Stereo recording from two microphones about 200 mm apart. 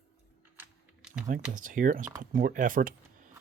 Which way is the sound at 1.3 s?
40° right (ahead or behind).